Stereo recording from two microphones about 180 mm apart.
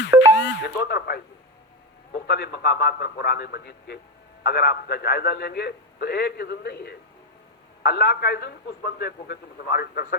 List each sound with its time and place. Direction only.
0.3 s a man's voice: 80° left; by 10.2 s 60° left (ahead or behind)